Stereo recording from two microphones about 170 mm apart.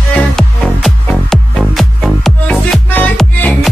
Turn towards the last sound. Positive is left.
turn(degrees=5)  # may be behind; listen again after turning